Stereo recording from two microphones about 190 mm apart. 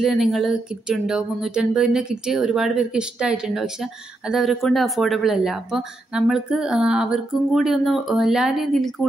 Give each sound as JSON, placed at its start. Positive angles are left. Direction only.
{"t": 0.0, "sound": "speech", "side_deg": 0}